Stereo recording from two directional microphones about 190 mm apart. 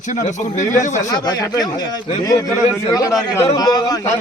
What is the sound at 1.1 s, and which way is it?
A man's voice, 20° left (ahead or behind).